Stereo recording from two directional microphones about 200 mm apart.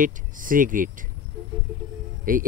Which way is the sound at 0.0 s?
40° right (ahead or behind).